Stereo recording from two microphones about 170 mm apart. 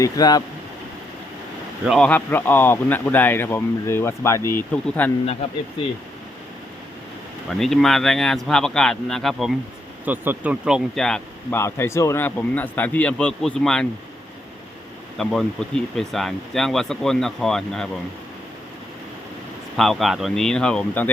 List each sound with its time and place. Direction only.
0.0 s speech: 20° left (ahead or behind)
1.9 s speech: 5° left (ahead or behind)
7.6 s speech: centre (ahead or behind)
11.5 s speech: 15° left (ahead or behind)
15.2 s speech: 5° left (ahead or behind)
19.7 s speech: centre (ahead or behind)